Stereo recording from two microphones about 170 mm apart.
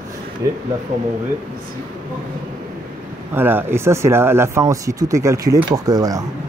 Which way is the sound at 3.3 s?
10° right (ahead or behind).